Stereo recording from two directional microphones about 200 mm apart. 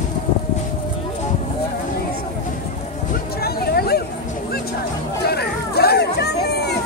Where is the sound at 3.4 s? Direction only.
50° left (ahead or behind).